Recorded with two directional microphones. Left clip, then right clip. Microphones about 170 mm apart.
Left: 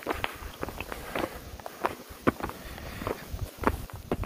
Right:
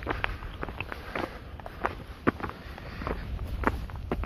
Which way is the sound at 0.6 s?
10° left (ahead or behind).